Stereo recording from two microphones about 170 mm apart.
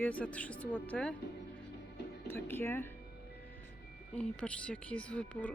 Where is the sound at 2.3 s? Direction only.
15° left (ahead or behind).